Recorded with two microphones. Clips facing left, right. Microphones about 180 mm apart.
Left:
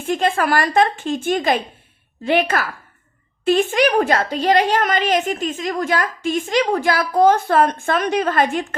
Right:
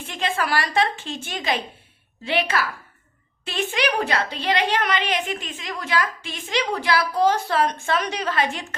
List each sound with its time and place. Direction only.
0.0 s a woman's voice: 45° left (ahead or behind)